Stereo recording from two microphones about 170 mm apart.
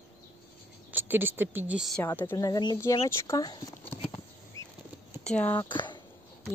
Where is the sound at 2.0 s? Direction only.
15° left (ahead or behind).